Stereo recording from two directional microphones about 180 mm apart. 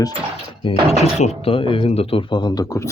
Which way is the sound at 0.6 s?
35° left (ahead or behind).